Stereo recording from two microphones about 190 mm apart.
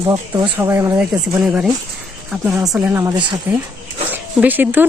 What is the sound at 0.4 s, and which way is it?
Speech, 10° right (ahead or behind).